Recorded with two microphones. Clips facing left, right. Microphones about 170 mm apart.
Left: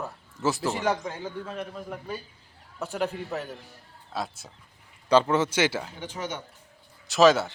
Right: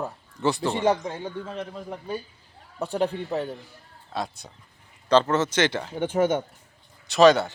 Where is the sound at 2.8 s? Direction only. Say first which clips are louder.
Right 4 dB; 35° right (ahead or behind).